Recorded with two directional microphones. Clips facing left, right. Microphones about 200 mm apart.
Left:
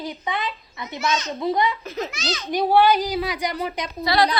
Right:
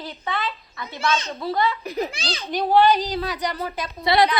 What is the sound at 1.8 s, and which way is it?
Speech, 15° right (ahead or behind).